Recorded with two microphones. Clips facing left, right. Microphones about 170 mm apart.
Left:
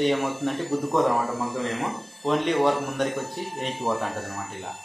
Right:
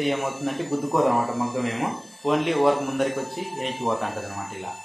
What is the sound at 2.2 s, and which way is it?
A man's voice, 5° right (ahead or behind).